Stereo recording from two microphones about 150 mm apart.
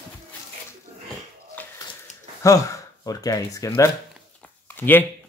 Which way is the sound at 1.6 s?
10° left (ahead or behind).